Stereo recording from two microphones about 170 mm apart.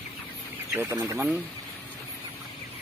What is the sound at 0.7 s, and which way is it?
Speech, 15° right (ahead or behind).